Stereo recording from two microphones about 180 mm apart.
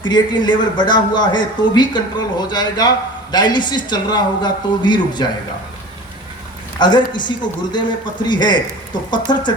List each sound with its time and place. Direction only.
0.0 s a man's voice: 25° left (ahead or behind)
6.7 s a man's voice: 25° left (ahead or behind)